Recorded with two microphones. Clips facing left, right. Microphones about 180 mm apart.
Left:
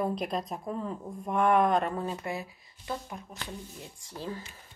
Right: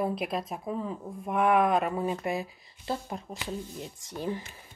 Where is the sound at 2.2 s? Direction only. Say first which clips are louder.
Right 4 dB; 20° right (ahead or behind).